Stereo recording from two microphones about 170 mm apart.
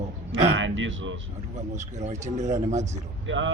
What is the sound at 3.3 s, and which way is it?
Speech, 90° right.